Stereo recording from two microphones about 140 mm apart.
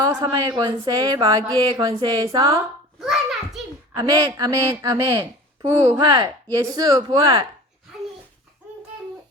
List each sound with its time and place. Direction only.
0.0 s speech: 30° right (ahead or behind)
2.2 s speech: 25° right (ahead or behind)
3.0 s a sound: 5° right (ahead or behind)
3.9 s speech: 30° right (ahead or behind)
7.2 s speech: 40° right (ahead or behind)